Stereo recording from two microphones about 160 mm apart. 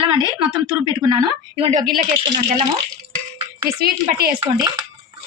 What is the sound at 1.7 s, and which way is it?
Speech, 55° right (ahead or behind).